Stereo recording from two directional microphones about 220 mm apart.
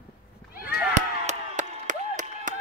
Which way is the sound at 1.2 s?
35° right (ahead or behind).